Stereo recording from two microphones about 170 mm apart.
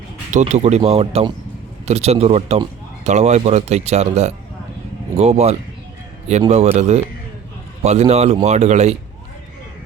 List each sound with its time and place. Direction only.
0.3 s speech: 45° right (ahead or behind)